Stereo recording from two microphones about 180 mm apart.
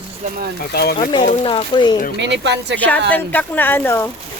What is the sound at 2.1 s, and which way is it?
Speech, 75° right (ahead or behind).